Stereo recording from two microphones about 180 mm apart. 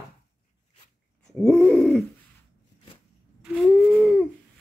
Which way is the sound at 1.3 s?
5° left (ahead or behind).